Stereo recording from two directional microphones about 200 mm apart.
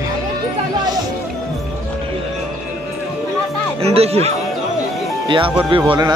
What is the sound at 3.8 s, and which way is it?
Speech, 30° right (ahead or behind).